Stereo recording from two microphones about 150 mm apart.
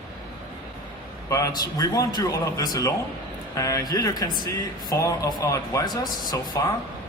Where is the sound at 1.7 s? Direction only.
25° left (ahead or behind).